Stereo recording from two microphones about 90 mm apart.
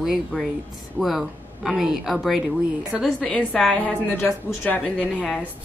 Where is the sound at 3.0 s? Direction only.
10° left (ahead or behind).